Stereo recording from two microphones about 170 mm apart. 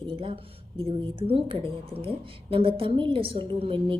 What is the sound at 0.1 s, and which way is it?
A woman's voice, 30° right (ahead or behind).